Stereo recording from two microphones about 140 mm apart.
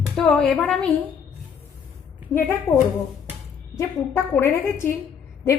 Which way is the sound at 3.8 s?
20° left (ahead or behind).